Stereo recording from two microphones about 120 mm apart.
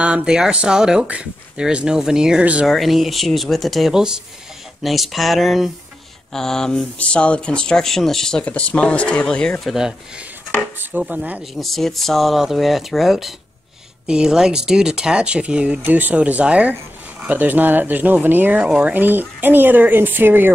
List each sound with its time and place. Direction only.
0.0 s speech: 10° right (ahead or behind)
10.5 s speech: 15° right (ahead or behind)
11.5 s speech: centre (ahead or behind); by 20.5 s 15° right (ahead or behind)